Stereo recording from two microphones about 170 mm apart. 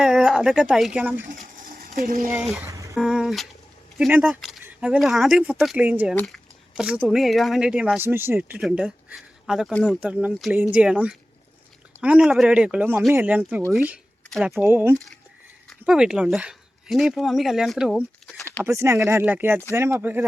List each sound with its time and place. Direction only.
0.0 s speech: centre (ahead or behind)
2.0 s speech: 50° right (ahead or behind)
2.6 s a sound: 20° right (ahead or behind)
2.9 s speech: 5° right (ahead or behind)
10.0 s speech: 5° right (ahead or behind)
14.6 s speech: 15° right (ahead or behind)
14.9 s speech: centre (ahead or behind)
18.6 s speech: 15° right (ahead or behind)